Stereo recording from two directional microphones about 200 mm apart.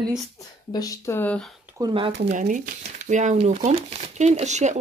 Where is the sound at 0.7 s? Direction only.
15° left (ahead or behind).